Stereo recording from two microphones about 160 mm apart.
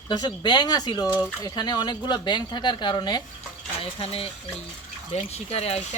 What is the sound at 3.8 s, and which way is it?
Speech, 35° left (ahead or behind).